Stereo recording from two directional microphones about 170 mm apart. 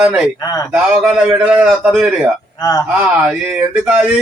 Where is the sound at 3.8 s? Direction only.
5° right (ahead or behind).